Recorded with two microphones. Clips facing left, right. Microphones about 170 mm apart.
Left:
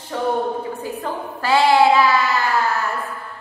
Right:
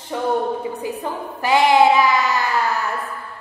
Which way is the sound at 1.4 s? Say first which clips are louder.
Even; 15° right (ahead or behind).